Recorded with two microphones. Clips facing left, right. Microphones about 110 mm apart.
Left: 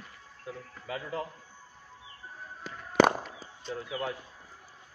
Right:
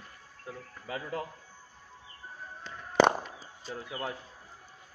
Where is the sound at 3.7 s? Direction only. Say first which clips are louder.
Left 3 dB; 30° right (ahead or behind).